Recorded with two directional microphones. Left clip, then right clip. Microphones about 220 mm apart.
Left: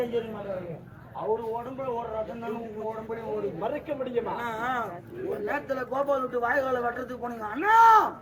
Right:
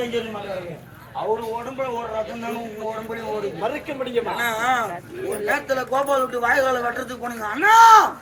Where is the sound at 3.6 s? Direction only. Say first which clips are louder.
Right 5 dB; 15° right (ahead or behind).